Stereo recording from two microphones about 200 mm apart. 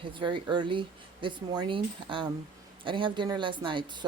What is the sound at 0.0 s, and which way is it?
Speech, 25° right (ahead or behind).